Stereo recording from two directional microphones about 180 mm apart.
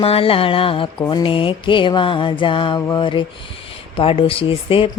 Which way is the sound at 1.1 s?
30° left (ahead or behind).